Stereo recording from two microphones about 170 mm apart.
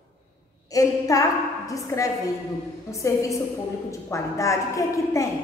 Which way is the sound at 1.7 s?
20° left (ahead or behind).